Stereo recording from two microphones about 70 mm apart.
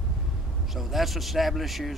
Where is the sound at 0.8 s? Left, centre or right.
Centre.